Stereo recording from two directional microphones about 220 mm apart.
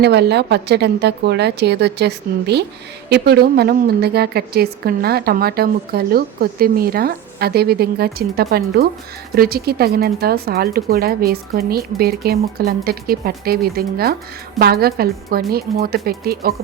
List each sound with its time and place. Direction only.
0.0 s a woman's voice: 50° right (ahead or behind)